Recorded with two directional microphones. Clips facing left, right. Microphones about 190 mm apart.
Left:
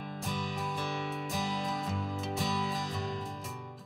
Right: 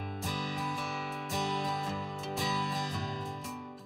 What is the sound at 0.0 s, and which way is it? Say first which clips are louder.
Music: even; centre (ahead or behind).